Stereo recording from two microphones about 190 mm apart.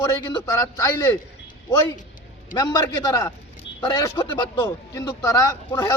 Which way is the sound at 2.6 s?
20° left (ahead or behind).